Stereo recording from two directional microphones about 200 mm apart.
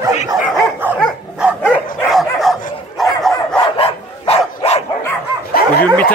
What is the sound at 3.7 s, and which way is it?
Dog, 30° left (ahead or behind).